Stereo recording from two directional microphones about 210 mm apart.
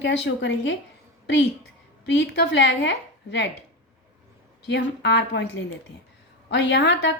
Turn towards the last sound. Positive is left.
turn(degrees=55)  # may be behind; listen again after turning